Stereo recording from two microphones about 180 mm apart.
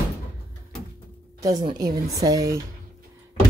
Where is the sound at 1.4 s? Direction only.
20° right (ahead or behind).